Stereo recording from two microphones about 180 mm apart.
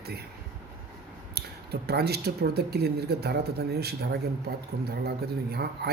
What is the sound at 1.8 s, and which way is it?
Speech, 60° right (ahead or behind).